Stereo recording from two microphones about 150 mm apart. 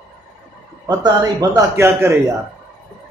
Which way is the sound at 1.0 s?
25° right (ahead or behind).